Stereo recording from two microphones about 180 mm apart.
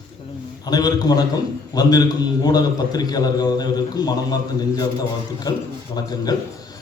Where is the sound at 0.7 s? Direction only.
20° left (ahead or behind).